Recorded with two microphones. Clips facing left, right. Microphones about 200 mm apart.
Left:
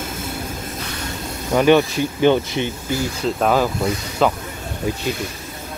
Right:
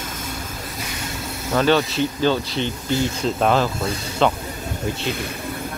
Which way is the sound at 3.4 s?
5° left (ahead or behind).